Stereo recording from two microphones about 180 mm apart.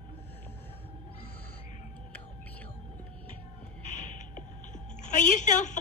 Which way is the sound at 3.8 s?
40° left (ahead or behind).